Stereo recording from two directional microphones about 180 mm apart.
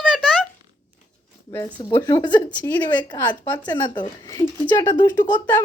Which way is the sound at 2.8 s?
25° left (ahead or behind).